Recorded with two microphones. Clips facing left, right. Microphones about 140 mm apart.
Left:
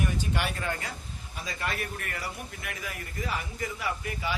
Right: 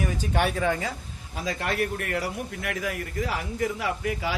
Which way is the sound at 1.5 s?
75° right (ahead or behind).